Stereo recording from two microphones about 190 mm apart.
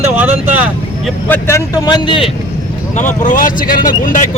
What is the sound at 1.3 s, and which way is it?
Speech, 15° left (ahead or behind).